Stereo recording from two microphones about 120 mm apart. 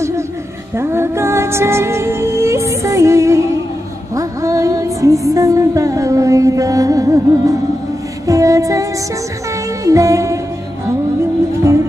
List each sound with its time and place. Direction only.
0.7 s music: 20° right (ahead or behind)
8.3 s female singing: 30° right (ahead or behind)
9.8 s music: 25° right (ahead or behind)